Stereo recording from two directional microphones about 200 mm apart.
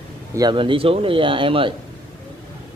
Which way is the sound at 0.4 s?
25° right (ahead or behind).